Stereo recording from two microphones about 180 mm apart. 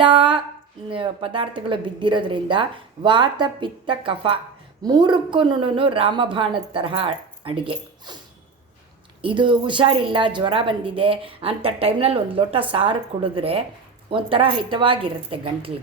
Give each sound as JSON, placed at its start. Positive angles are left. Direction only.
{"t": 0.0, "sound": "a woman's voice", "side_deg": -30}
{"t": 9.2, "sound": "a woman's voice", "side_deg": -25}